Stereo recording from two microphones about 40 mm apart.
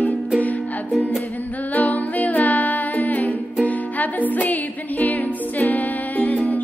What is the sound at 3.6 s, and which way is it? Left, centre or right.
Music, left.